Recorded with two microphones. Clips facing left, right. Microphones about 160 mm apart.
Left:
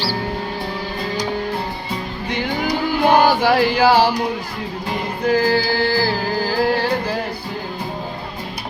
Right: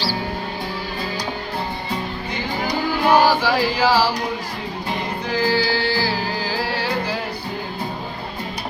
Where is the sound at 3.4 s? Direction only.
60° left (ahead or behind).